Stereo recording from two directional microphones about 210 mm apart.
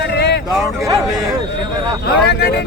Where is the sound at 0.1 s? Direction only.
55° left (ahead or behind).